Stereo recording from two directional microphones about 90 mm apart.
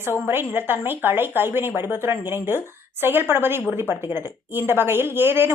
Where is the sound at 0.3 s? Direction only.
25° right (ahead or behind).